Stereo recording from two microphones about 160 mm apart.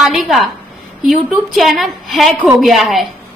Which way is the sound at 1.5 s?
Centre (ahead or behind).